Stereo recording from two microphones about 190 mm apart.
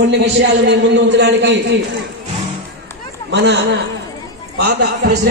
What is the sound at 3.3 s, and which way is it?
Speech, 65° right (ahead or behind).